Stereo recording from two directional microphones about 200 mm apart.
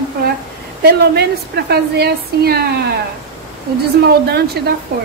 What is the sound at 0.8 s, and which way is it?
A woman's voice, 55° right (ahead or behind).